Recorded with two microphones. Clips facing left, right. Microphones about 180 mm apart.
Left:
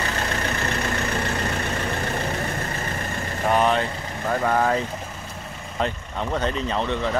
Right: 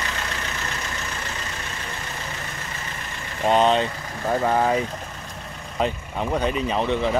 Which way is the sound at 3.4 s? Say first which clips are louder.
Right 2 dB; 20° right (ahead or behind).